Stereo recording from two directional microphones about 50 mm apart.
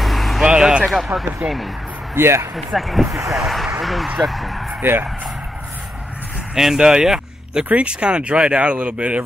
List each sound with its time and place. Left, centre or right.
0.0 s vehicle: centre
0.5 s a sound: centre
0.8 s speech: centre
1.4 s speech: right
2.1 s speech: right
2.5 s speech: centre
3.1 s speech: right
3.3 s speech: centre
6.5 s speech: centre; by 9.2 s right